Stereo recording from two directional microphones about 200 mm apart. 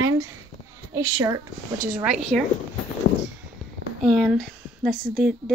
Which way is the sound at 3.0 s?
60° left (ahead or behind).